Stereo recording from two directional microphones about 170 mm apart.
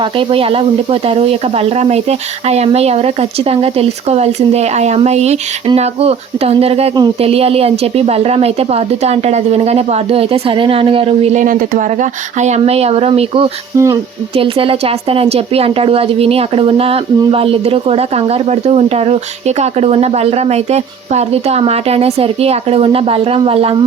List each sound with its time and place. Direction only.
0.2 s a woman's voice: 30° right (ahead or behind)
13.7 s speech: 15° right (ahead or behind)
14.3 s a woman's voice: 35° right (ahead or behind)